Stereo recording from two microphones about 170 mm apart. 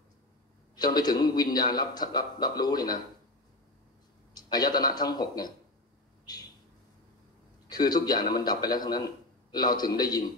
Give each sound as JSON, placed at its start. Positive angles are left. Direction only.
{"t": 0.7, "sound": "a man's voice", "side_deg": 25}
{"t": 4.3, "sound": "a man's voice", "side_deg": 25}
{"t": 7.6, "sound": "a man's voice", "side_deg": 25}